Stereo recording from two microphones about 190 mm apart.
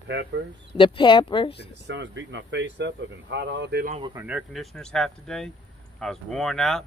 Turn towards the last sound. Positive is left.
turn(degrees=0)  # may be behind; listen again after turning